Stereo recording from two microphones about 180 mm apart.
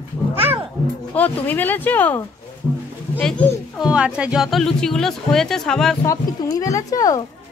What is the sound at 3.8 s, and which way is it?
Speech, 5° right (ahead or behind).